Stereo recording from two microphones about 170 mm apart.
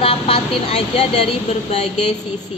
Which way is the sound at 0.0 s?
35° left (ahead or behind).